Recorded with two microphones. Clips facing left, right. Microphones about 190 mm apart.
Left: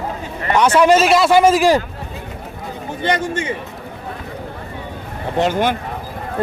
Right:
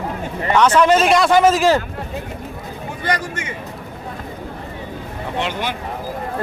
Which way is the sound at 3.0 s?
25° left (ahead or behind).